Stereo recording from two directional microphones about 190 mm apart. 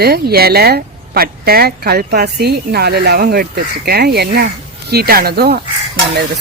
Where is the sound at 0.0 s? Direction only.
55° right (ahead or behind).